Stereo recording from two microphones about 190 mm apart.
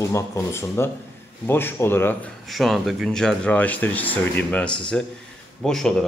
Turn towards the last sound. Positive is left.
turn(degrees=5)  # may be behind; listen again after turning